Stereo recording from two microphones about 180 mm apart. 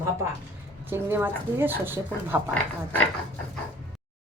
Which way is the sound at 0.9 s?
10° right (ahead or behind).